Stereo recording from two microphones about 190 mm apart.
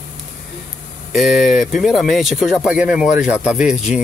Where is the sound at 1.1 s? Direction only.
Centre (ahead or behind).